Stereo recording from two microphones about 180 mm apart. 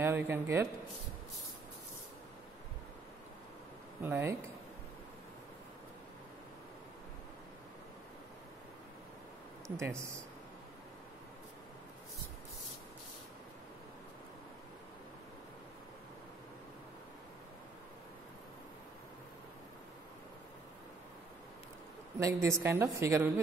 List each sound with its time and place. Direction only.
0.0 s speech: 15° right (ahead or behind)
4.0 s speech: 15° right (ahead or behind)
9.8 s speech: 15° right (ahead or behind)
22.2 s speech: 15° right (ahead or behind)